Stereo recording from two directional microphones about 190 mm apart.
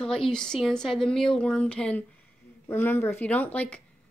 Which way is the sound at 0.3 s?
5° left (ahead or behind).